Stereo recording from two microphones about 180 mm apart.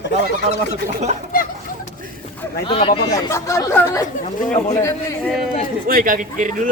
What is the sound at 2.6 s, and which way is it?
A man's voice, 30° left (ahead or behind).